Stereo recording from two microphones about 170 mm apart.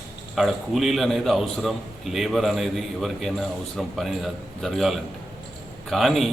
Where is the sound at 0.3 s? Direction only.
Centre (ahead or behind).